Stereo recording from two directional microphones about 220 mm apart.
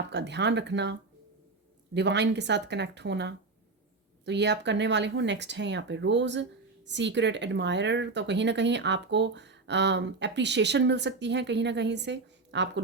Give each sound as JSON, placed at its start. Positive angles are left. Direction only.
{"t": 0.1, "sound": "speech", "side_deg": -50}